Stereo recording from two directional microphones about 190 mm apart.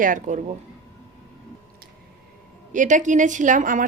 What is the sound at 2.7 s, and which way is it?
A woman's voice, 40° right (ahead or behind).